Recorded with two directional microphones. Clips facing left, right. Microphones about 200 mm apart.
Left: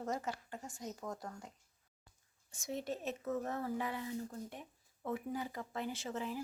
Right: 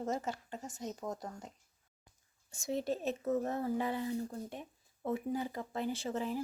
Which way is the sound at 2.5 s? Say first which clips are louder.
Right 5 dB; 30° right (ahead or behind).